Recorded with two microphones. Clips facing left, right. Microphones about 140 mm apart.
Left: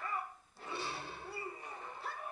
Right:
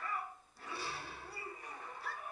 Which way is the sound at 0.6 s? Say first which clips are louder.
Left 3 dB; 25° left (ahead or behind).